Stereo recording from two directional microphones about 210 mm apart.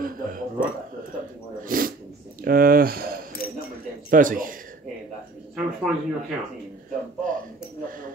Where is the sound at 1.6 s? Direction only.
40° right (ahead or behind).